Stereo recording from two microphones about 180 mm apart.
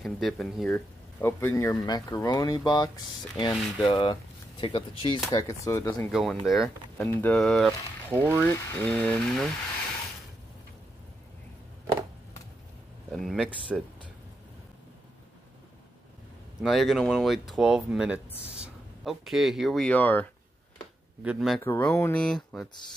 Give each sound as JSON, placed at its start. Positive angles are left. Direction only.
{"t": 0.0, "sound": "speech", "side_deg": 0}
{"t": 1.4, "sound": "speech", "side_deg": 15}
{"t": 5.3, "sound": "speech", "side_deg": 20}
{"t": 6.1, "sound": "speech", "side_deg": 0}
{"t": 7.0, "sound": "speech", "side_deg": 10}
{"t": 8.1, "sound": "speech", "side_deg": -10}
{"t": 8.4, "sound": "speech", "side_deg": 10}
{"t": 13.1, "sound": "speech", "side_deg": 0}
{"t": 16.6, "sound": "speech", "side_deg": 0}
{"t": 21.2, "sound": "speech", "side_deg": -5}
{"t": 21.5, "sound": "speech", "side_deg": 10}